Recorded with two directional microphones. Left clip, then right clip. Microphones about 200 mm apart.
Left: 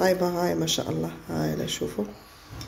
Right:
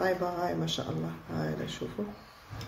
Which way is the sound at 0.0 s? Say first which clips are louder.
Left 6 dB; 35° left (ahead or behind).